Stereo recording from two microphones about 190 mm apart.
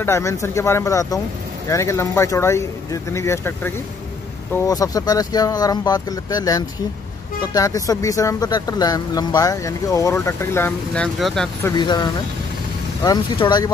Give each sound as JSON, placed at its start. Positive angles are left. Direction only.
{"t": 0.0, "sound": "speech", "side_deg": 15}
{"t": 11.6, "sound": "speech", "side_deg": 25}